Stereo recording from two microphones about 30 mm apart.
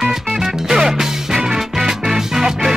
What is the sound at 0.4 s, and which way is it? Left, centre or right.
Music, centre.